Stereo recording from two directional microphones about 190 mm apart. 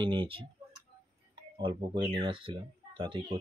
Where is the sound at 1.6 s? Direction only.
25° right (ahead or behind).